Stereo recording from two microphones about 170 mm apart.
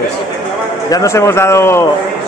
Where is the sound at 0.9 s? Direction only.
20° left (ahead or behind).